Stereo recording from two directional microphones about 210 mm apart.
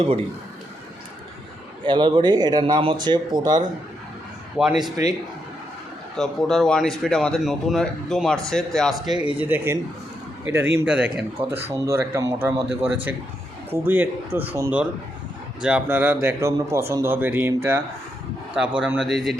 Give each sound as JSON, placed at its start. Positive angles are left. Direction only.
{"t": 1.8, "sound": "speech", "side_deg": -20}
{"t": 4.6, "sound": "speech", "side_deg": -5}
{"t": 6.1, "sound": "speech", "side_deg": 0}